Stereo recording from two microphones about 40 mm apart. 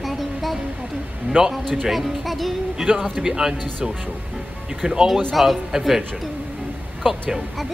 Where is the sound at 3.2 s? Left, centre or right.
Centre.